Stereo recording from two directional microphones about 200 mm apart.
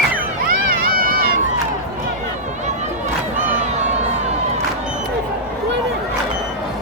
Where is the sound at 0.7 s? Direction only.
45° right (ahead or behind).